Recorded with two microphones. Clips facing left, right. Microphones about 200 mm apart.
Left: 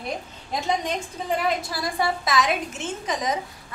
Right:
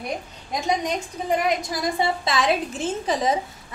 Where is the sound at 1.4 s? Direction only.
20° right (ahead or behind).